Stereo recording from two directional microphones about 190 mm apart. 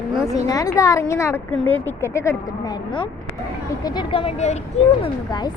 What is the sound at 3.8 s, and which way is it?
Speech, 25° left (ahead or behind).